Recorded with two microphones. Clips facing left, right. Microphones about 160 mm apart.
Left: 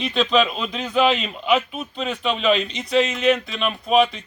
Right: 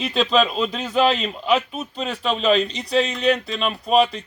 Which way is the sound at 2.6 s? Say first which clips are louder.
Even; 35° right (ahead or behind).